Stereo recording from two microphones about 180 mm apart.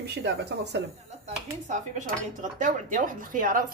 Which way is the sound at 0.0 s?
65° right (ahead or behind).